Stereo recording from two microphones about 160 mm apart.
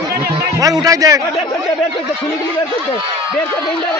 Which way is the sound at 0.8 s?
20° right (ahead or behind).